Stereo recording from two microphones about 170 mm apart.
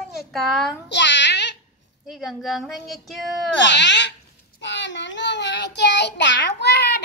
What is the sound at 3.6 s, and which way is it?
Speech, 90° left.